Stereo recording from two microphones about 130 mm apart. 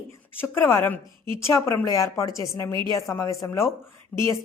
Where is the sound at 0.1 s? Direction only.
20° left (ahead or behind).